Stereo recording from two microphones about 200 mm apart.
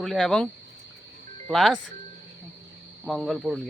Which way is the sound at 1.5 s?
Centre (ahead or behind).